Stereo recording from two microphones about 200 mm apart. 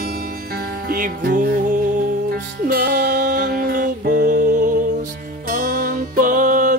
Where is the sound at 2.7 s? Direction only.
50° right (ahead or behind).